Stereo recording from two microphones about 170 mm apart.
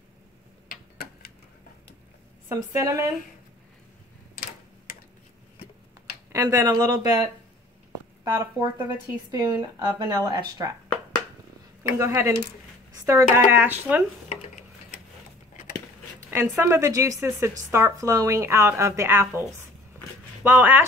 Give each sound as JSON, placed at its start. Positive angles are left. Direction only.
{"t": 0.7, "sound": "a sound", "side_deg": 60}
{"t": 2.5, "sound": "speech", "side_deg": -15}
{"t": 6.3, "sound": "speech", "side_deg": -15}
{"t": 9.8, "sound": "speech", "side_deg": -25}
{"t": 12.0, "sound": "speech", "side_deg": -15}
{"t": 16.2, "sound": "speech", "side_deg": -15}
{"t": 20.4, "sound": "speech", "side_deg": -10}